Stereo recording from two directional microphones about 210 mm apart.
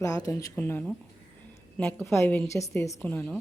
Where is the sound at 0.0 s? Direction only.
15° left (ahead or behind).